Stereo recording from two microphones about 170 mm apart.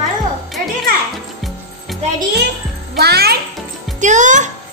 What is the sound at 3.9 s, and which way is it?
Speech, 45° right (ahead or behind).